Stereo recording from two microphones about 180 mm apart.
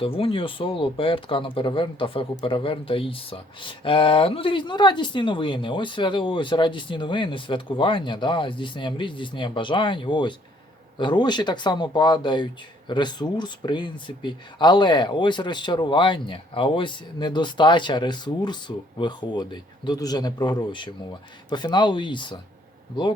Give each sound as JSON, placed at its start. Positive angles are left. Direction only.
{"t": 0.0, "sound": "speech", "side_deg": 30}